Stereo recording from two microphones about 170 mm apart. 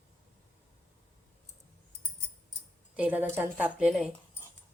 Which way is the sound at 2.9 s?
10° right (ahead or behind).